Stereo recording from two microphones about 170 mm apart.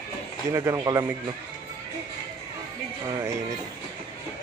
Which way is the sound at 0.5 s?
15° right (ahead or behind).